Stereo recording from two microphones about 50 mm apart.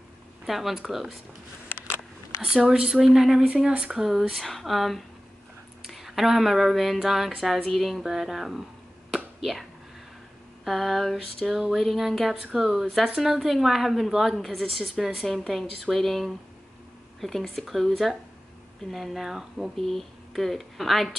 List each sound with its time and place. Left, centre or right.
0.5 s speech: centre
2.4 s speech: centre
3.4 s speech: right
3.9 s speech: centre
4.3 s a woman's voice: centre
9.1 s finger snapping: centre
10.6 s a woman's voice: centre